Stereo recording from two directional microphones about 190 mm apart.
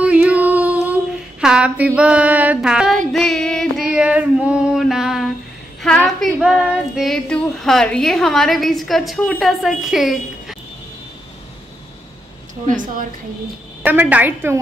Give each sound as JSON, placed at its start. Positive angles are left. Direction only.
{"t": 0.0, "sound": "female singing", "side_deg": -5}
{"t": 5.8, "sound": "child singing", "side_deg": 5}
{"t": 12.6, "sound": "a woman's voice", "side_deg": -45}
{"t": 13.8, "sound": "a woman's voice", "side_deg": -10}